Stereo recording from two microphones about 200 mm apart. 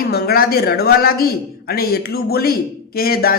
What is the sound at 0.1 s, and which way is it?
Speech, 50° left (ahead or behind).